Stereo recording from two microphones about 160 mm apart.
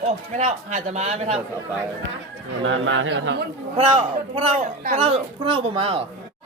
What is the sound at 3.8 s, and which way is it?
Speech, 35° right (ahead or behind).